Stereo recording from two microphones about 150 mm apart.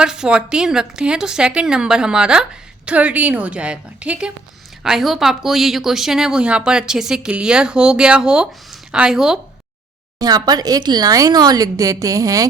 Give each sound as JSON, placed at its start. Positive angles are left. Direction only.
{"t": 0.0, "sound": "a woman's voice", "side_deg": -5}
{"t": 10.2, "sound": "speech", "side_deg": -25}